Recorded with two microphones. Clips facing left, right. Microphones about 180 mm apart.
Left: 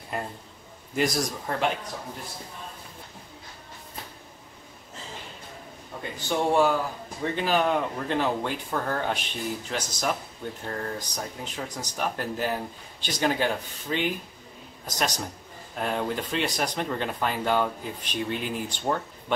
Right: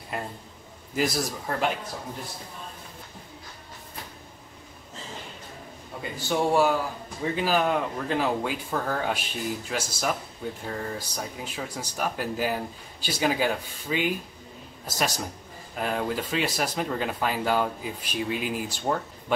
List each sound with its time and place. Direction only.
0.9 s speech: centre (ahead or behind)
5.9 s speech: 5° right (ahead or behind)